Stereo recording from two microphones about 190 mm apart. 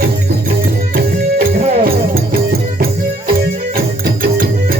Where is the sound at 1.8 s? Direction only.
50° right (ahead or behind).